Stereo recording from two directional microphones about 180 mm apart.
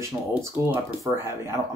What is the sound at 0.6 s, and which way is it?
Speech, 15° right (ahead or behind).